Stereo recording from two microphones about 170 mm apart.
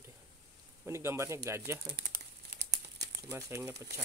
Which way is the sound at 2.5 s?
75° right (ahead or behind).